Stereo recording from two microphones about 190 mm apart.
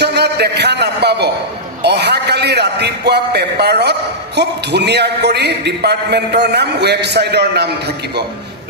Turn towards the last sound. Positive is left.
turn(degrees=-60)  # may be behind; listen again after turning